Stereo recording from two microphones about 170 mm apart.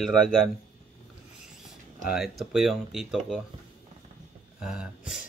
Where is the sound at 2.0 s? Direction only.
Centre (ahead or behind).